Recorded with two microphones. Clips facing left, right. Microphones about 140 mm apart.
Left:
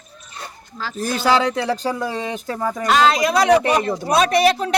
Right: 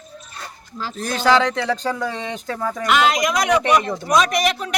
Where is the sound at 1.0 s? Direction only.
5° left (ahead or behind).